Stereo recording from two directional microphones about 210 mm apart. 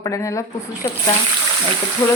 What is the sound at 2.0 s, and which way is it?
Speech, 15° left (ahead or behind).